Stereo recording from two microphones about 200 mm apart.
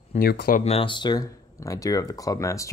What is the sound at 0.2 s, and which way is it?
Speech, 50° left (ahead or behind).